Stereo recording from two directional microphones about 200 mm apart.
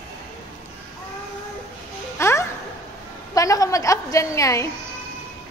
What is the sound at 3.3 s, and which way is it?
A woman's voice, 15° left (ahead or behind).